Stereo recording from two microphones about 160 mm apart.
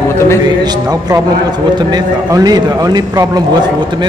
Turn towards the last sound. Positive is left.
turn(degrees=-30)  # may be behind; listen again after turning